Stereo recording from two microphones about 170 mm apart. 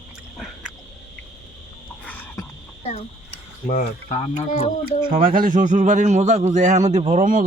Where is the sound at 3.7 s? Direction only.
50° left (ahead or behind).